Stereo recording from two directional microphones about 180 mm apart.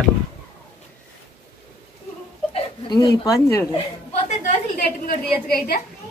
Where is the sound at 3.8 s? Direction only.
40° left (ahead or behind).